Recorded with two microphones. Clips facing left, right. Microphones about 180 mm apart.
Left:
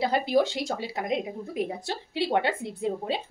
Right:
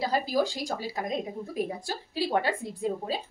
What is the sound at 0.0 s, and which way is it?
A woman's voice, 25° left (ahead or behind).